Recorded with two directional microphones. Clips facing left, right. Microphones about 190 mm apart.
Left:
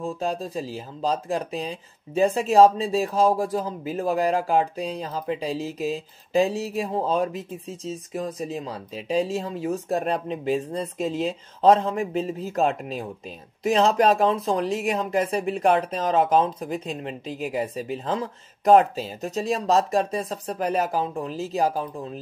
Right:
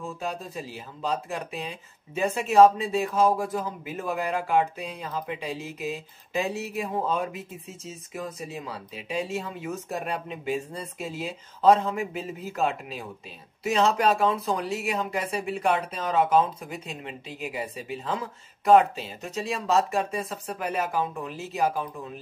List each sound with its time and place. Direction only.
0.0 s speech: 35° left (ahead or behind)